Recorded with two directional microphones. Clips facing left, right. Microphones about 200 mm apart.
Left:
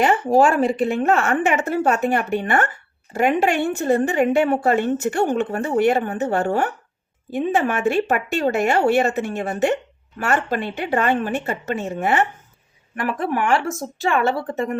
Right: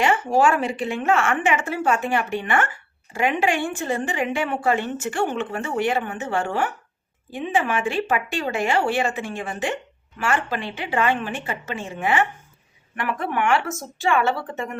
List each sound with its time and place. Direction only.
0.0 s a woman's voice: 35° left (ahead or behind)
4.7 s a woman's voice: 55° left (ahead or behind)
5.1 s a woman's voice: 40° left (ahead or behind)